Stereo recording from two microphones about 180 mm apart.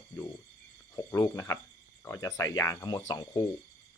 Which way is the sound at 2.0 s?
20° left (ahead or behind).